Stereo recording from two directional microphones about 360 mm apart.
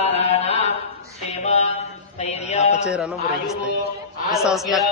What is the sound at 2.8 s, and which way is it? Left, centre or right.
A man's voice, centre.